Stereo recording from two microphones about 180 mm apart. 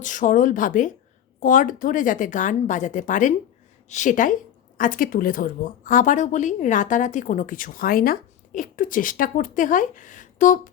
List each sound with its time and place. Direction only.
0.0 s speech: 45° left (ahead or behind)